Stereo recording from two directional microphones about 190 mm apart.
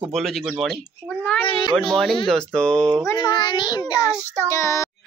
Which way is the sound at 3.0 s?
20° left (ahead or behind).